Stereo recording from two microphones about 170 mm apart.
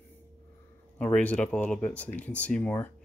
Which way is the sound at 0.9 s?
10° left (ahead or behind).